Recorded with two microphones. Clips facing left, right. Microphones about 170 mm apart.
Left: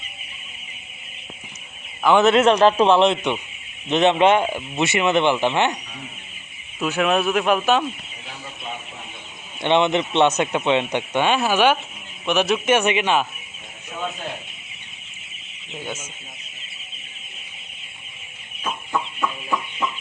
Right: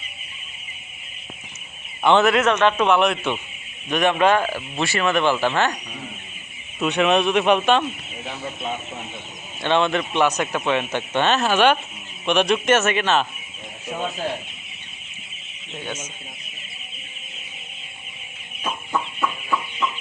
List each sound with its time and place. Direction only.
2.2 s speech: 25° left (ahead or behind)
6.7 s speech: centre (ahead or behind)
9.6 s a man's voice: 20° left (ahead or behind)
15.7 s a man's voice: 10° left (ahead or behind)